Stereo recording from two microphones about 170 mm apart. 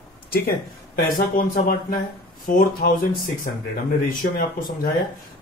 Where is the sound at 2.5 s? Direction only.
55° left (ahead or behind).